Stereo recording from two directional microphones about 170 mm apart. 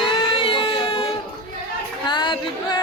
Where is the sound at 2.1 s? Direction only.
25° left (ahead or behind).